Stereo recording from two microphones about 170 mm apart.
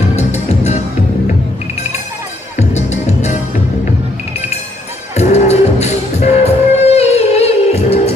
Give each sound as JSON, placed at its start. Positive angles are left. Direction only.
{"t": 0.1, "sound": "music", "side_deg": 40}
{"t": 2.5, "sound": "music", "side_deg": 40}
{"t": 5.1, "sound": "music", "side_deg": 40}